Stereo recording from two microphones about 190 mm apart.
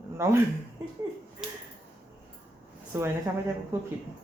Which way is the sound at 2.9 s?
10° right (ahead or behind).